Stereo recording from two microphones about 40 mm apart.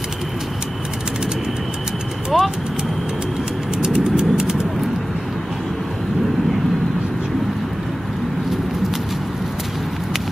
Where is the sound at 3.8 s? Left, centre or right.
Centre.